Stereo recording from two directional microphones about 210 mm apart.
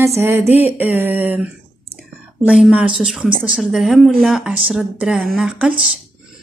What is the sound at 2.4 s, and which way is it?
Speech, 5° right (ahead or behind).